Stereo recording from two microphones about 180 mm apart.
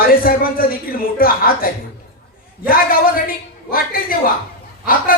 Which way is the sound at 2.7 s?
50° left (ahead or behind).